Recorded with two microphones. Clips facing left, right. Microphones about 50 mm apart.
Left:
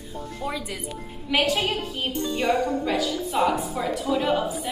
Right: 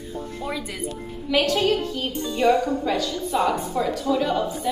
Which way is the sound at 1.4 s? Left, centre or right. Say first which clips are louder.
Right 4 dB; centre.